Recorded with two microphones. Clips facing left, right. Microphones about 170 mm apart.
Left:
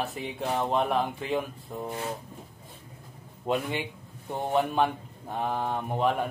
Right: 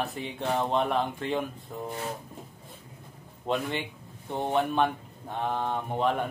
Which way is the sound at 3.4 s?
5° left (ahead or behind).